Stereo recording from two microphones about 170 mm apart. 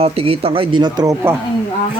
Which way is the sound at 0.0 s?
35° right (ahead or behind).